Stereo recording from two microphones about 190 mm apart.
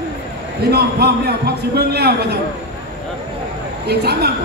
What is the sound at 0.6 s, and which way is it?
A man's voice, 55° right (ahead or behind).